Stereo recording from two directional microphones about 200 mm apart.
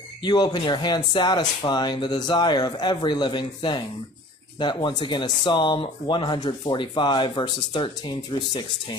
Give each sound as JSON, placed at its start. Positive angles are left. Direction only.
{"t": 0.2, "sound": "speech", "side_deg": 20}